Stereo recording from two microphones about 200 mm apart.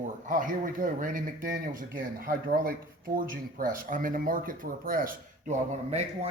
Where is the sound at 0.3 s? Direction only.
40° right (ahead or behind).